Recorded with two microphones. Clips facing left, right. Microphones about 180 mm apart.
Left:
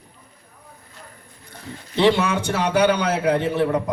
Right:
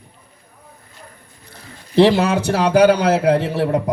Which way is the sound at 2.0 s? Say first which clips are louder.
Right 5 dB; 35° right (ahead or behind).